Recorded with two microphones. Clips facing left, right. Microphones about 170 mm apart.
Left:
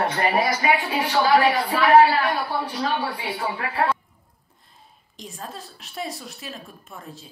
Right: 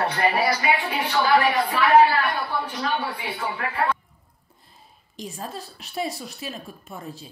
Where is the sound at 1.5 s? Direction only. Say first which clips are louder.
Left 1 dB; 30° left (ahead or behind).